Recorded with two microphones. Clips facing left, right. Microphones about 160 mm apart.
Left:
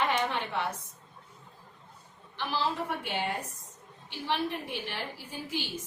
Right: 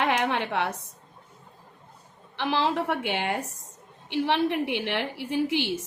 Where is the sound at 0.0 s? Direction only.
75° right (ahead or behind).